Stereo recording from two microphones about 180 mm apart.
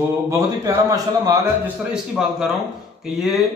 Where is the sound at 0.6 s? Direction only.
20° right (ahead or behind).